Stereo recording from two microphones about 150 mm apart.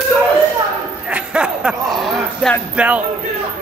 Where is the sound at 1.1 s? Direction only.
5° right (ahead or behind).